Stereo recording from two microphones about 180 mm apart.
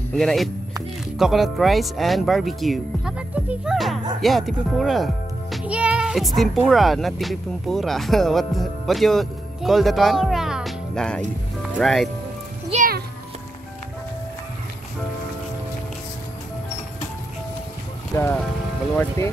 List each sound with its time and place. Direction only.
0.1 s speech: centre (ahead or behind)
12.7 s music: 50° right (ahead or behind)
18.1 s speech: 15° left (ahead or behind)